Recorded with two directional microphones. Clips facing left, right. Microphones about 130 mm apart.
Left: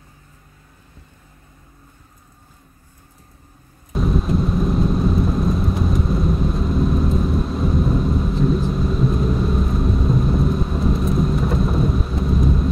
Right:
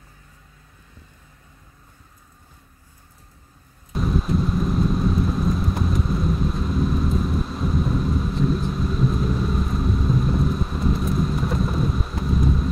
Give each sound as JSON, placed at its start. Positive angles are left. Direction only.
{"t": 3.9, "sound": "vehicle", "side_deg": 0}